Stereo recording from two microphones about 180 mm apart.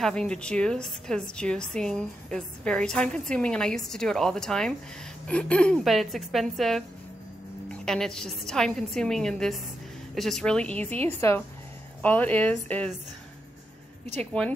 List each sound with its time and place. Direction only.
0.0 s a woman's voice: 5° left (ahead or behind)
7.8 s a woman's voice: 5° left (ahead or behind)
14.4 s a woman's voice: 5° left (ahead or behind)